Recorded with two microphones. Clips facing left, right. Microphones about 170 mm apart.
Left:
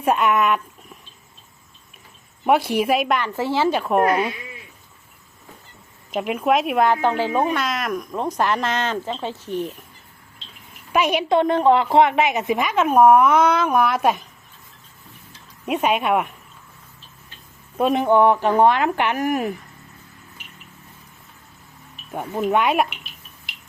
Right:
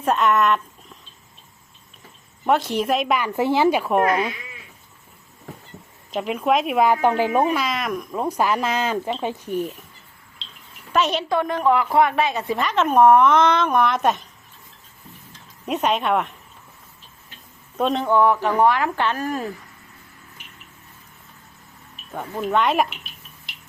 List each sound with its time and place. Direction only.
0.0 s speech: 10° left (ahead or behind)
2.5 s speech: 10° left (ahead or behind)
3.1 s speech: 10° right (ahead or behind)
6.1 s speech: centre (ahead or behind)
10.9 s speech: 10° left (ahead or behind)
11.3 s speech: 25° left (ahead or behind); by 14.3 s 5° left (ahead or behind)
15.3 s speech: 5° left (ahead or behind)
17.7 s speech: 5° left (ahead or behind)
18.0 s speech: 20° left (ahead or behind)
22.1 s speech: 15° left (ahead or behind)